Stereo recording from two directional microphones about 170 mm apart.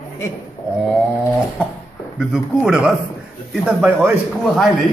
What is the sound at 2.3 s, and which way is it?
A man's voice, 5° right (ahead or behind).